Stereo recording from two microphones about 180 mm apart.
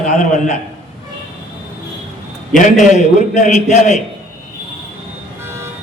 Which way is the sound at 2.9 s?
40° left (ahead or behind).